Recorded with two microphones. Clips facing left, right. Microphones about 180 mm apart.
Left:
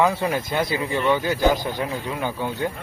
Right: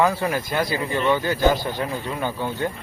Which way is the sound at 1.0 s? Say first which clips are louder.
Even; 10° left (ahead or behind).